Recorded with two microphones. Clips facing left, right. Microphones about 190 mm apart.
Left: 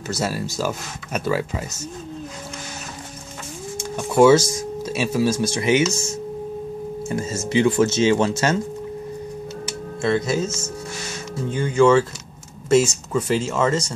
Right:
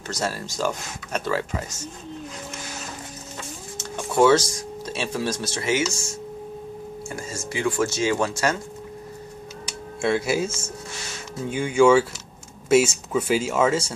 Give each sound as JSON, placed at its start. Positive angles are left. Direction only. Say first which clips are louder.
{"t": 0.1, "sound": "speech", "louder": "left 3 dB", "side_deg": 10}
{"t": 3.7, "sound": "speech", "louder": "left 4 dB", "side_deg": 10}
{"t": 10.0, "sound": "speech", "louder": "left 1 dB", "side_deg": -10}
{"t": 11.5, "sound": "speech", "louder": "left 1 dB", "side_deg": -10}